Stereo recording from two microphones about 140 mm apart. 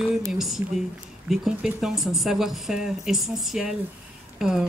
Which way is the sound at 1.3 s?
5° right (ahead or behind).